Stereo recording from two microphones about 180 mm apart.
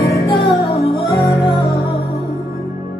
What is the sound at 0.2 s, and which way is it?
Music, 60° left (ahead or behind).